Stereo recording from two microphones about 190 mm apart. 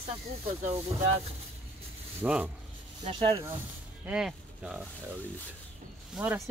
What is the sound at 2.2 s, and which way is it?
Speech, 5° right (ahead or behind).